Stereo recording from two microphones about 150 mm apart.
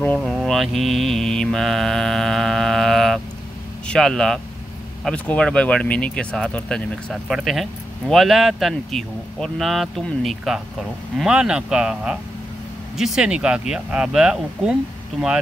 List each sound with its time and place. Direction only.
0.2 s speech: centre (ahead or behind)